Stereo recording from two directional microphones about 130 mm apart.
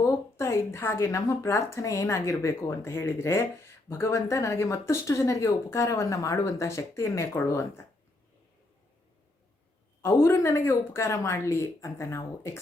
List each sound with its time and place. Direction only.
0.0 s speech: 20° left (ahead or behind)
10.0 s speech: 20° left (ahead or behind)